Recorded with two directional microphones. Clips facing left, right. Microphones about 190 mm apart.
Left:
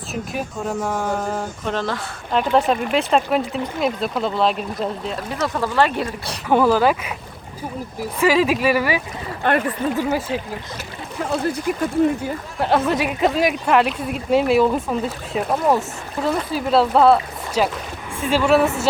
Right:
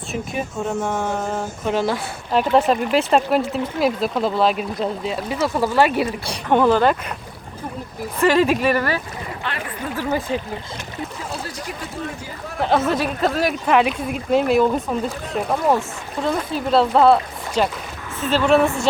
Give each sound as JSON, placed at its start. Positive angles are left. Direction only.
{"t": 0.5, "sound": "speech", "side_deg": -10}
{"t": 0.9, "sound": "speech", "side_deg": 10}
{"t": 1.6, "sound": "speech", "side_deg": -10}
{"t": 6.5, "sound": "speech", "side_deg": 5}
{"t": 8.2, "sound": "speech", "side_deg": 0}
{"t": 9.4, "sound": "speech", "side_deg": 50}
{"t": 10.1, "sound": "speech", "side_deg": 5}
{"t": 11.4, "sound": "speech", "side_deg": 55}
{"t": 12.6, "sound": "speech", "side_deg": 0}
{"t": 13.0, "sound": "speech", "side_deg": 10}
{"t": 13.7, "sound": "speech", "side_deg": 0}